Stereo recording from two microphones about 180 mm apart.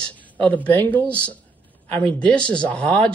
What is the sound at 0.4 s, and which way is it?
Speech, 10° left (ahead or behind).